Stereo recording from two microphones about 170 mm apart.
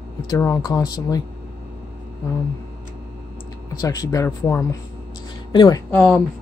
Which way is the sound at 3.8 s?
20° left (ahead or behind).